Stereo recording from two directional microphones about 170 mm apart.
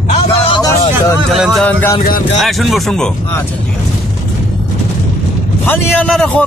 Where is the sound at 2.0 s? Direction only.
55° left (ahead or behind).